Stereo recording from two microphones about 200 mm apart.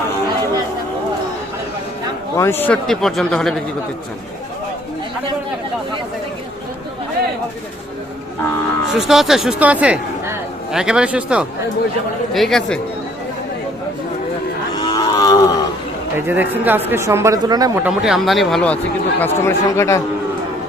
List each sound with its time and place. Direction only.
2.3 s speech: 15° left (ahead or behind)
9.0 s speech: centre (ahead or behind)
14.8 s wild animals: 20° left (ahead or behind)
16.1 s speech: 10° right (ahead or behind)
17.8 s speech: 5° right (ahead or behind); by 20.0 s 15° left (ahead or behind)